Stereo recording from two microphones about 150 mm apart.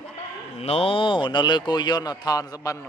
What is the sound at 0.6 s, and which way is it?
A man's voice, 40° left (ahead or behind).